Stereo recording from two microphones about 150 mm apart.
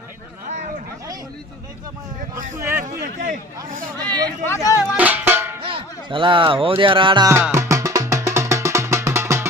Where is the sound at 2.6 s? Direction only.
15° right (ahead or behind).